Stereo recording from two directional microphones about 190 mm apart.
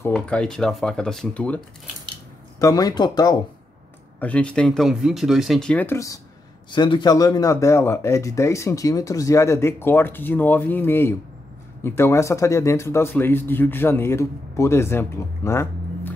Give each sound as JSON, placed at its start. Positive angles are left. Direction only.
{"t": 0.0, "sound": "speech", "side_deg": 5}
{"t": 2.6, "sound": "speech", "side_deg": 20}
{"t": 4.2, "sound": "speech", "side_deg": 5}